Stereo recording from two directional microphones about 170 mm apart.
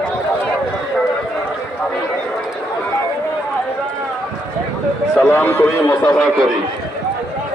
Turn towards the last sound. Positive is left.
turn(degrees=10)  # may be behind; listen again after turning